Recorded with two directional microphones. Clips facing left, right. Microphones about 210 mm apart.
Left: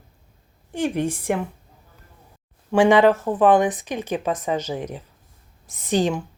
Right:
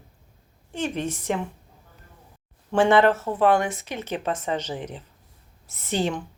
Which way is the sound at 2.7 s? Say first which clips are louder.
Left 3 dB; 15° left (ahead or behind).